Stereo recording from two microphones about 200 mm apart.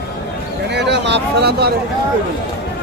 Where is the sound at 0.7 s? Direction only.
60° right (ahead or behind).